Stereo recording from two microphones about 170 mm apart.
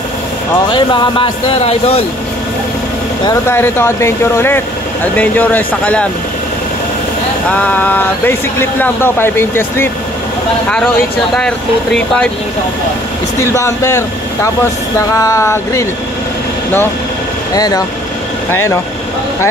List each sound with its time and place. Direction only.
0.7 s a man's voice: 25° left (ahead or behind)
3.4 s speech: 15° left (ahead or behind)
7.4 s speech: 10° left (ahead or behind)
11.3 s speech: 5° left (ahead or behind)
13.4 s speech: 15° left (ahead or behind)
17.6 s speech: 20° left (ahead or behind)